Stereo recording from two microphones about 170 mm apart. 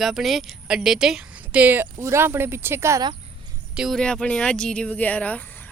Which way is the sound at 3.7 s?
Centre (ahead or behind).